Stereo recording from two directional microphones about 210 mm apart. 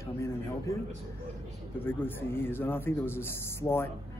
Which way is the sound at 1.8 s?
10° left (ahead or behind).